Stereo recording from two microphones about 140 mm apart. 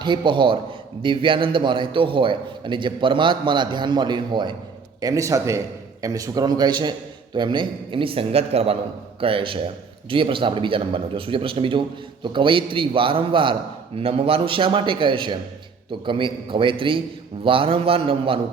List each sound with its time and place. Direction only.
0.0 s a man's voice: 35° right (ahead or behind)